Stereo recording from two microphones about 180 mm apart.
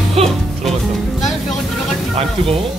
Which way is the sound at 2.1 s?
30° right (ahead or behind).